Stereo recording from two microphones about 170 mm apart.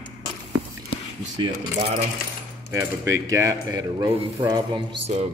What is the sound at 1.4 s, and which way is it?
Speech, 30° right (ahead or behind).